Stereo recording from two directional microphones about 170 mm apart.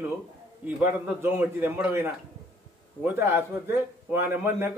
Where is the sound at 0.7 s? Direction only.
10° right (ahead or behind).